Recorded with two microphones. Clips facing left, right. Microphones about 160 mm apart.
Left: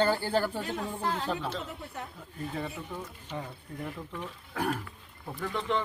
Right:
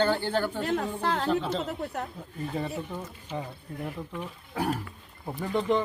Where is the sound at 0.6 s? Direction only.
65° right (ahead or behind).